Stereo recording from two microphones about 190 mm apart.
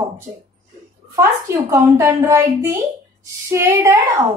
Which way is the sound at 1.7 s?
15° right (ahead or behind).